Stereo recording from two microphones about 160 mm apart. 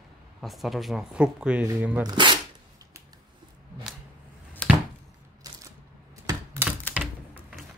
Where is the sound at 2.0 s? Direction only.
30° right (ahead or behind).